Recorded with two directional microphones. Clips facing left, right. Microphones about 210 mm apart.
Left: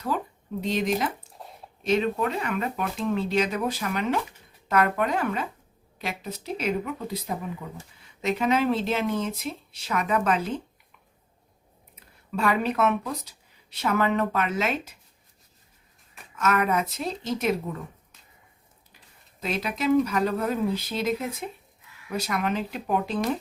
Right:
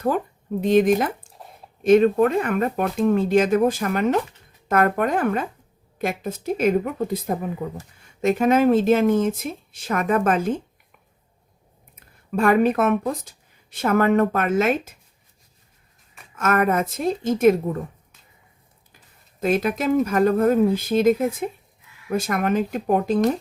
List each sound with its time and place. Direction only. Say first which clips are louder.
0.6 s speech: right 9 dB; 50° right (ahead or behind)
11.9 s speech: right 6 dB; 50° right (ahead or behind)
16.3 s speech: right 4 dB; 50° right (ahead or behind)
19.4 s speech: right 8 dB; 50° right (ahead or behind)